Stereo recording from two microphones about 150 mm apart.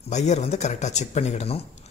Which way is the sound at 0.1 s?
50° left (ahead or behind).